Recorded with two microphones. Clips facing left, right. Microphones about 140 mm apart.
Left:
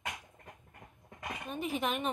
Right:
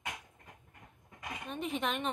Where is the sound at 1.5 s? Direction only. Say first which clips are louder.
Left 1 dB; 5° left (ahead or behind).